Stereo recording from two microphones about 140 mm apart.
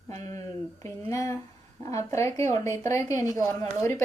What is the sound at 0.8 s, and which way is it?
A woman's voice, 20° left (ahead or behind).